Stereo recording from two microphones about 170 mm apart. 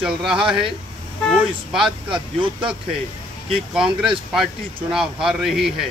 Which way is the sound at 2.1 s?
30° right (ahead or behind).